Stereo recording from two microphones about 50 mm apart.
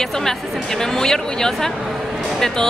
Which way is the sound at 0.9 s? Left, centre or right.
Centre.